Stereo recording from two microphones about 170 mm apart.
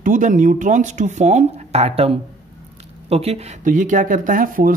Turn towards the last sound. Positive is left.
turn(degrees=-55)  # may be behind; listen again after turning